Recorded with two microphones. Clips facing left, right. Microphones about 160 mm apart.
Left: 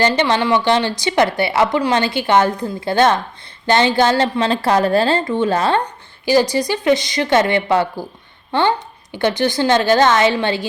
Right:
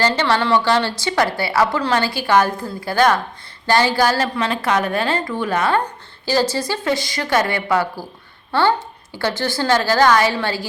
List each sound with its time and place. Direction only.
0.0 s a woman's voice: 20° left (ahead or behind)
6.2 s a woman's voice: 15° left (ahead or behind)